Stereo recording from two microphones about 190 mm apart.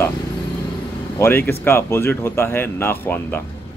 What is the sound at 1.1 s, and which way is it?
Speech, 10° left (ahead or behind).